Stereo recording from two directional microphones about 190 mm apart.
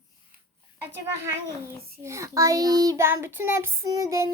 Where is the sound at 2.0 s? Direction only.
15° right (ahead or behind).